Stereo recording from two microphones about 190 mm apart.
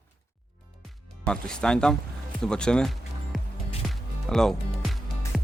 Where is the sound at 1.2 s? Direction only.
5° left (ahead or behind).